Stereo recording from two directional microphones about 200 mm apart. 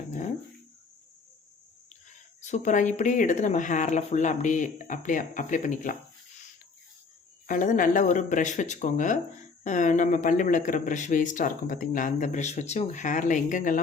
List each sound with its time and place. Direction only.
2.4 s speech: 35° left (ahead or behind)
7.4 s speech: 40° left (ahead or behind)